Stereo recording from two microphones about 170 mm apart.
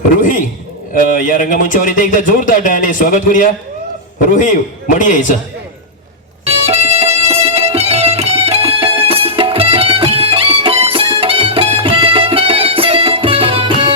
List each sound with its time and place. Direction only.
0.2 s a man's voice: 50° left (ahead or behind)
6.5 s music: 35° right (ahead or behind)